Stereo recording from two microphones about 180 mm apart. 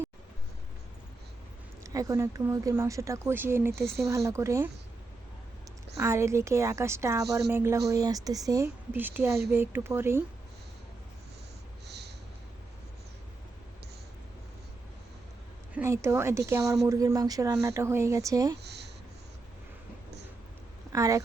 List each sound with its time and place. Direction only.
1.8 s speech: 20° right (ahead or behind)
6.0 s speech: 15° right (ahead or behind)
11.9 s a sound: 70° right (ahead or behind)
15.7 s speech: 15° right (ahead or behind)
18.6 s writing: 70° right (ahead or behind)
20.9 s speech: 15° right (ahead or behind)